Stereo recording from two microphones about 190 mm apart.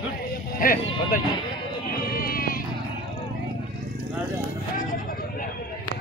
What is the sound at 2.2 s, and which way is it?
Sheep, 50° left (ahead or behind).